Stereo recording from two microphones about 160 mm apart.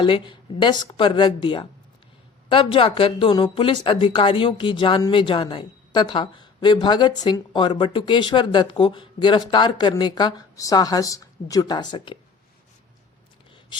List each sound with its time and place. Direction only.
0.0 s speech: 30° left (ahead or behind)